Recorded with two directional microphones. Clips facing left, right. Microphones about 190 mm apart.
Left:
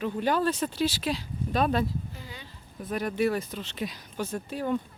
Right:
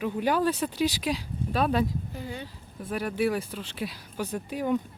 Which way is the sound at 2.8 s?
5° right (ahead or behind).